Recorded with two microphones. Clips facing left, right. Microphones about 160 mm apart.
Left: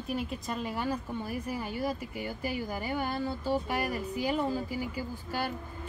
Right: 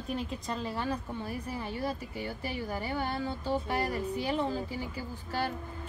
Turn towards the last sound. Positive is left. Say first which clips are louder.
# even
turn(degrees=10)  # may be behind; listen again after turning